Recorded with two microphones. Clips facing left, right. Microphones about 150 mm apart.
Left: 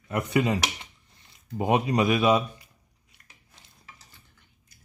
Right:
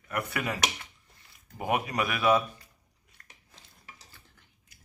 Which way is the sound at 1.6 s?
20° left (ahead or behind).